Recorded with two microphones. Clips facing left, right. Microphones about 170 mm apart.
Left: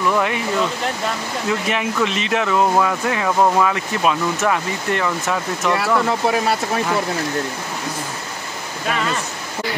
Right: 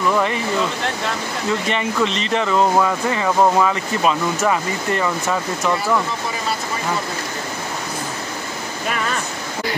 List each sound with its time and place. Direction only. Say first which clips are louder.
0.1 s speech: right 1 dB; centre (ahead or behind)
1.5 s speech: even; 5° left (ahead or behind)
6.0 s speech: left 6 dB; 70° left (ahead or behind)